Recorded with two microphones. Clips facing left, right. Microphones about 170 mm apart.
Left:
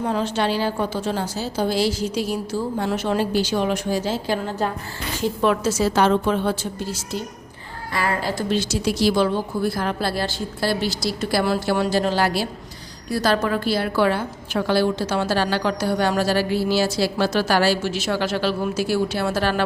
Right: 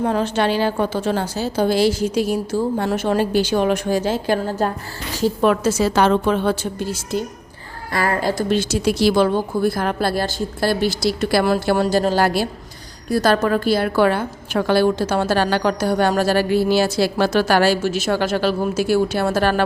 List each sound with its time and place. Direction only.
0.0 s a woman's voice: 55° right (ahead or behind)
5.8 s a woman's voice: 70° right (ahead or behind)
7.9 s a woman's voice: 45° right (ahead or behind); by 11.4 s 65° right (ahead or behind)
11.4 s a woman's voice: 50° right (ahead or behind)